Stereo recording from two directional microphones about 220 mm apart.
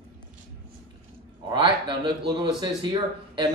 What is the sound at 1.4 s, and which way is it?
Speech, 20° right (ahead or behind).